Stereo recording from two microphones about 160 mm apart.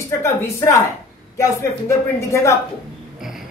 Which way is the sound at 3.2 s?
5° right (ahead or behind).